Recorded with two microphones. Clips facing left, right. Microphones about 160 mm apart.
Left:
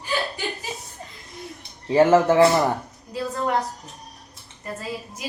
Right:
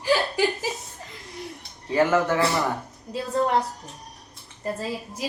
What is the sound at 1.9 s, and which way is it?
Speech, 25° left (ahead or behind).